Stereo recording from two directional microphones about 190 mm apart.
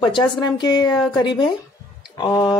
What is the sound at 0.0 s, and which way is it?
Speech, 25° left (ahead or behind).